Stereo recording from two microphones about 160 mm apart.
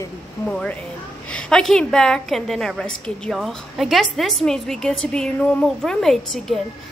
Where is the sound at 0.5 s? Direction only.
5° left (ahead or behind).